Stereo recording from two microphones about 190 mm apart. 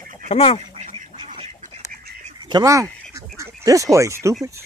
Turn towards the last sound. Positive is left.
turn(degrees=-15)  # may be behind; listen again after turning